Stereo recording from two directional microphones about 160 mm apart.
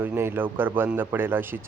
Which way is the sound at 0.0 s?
15° right (ahead or behind).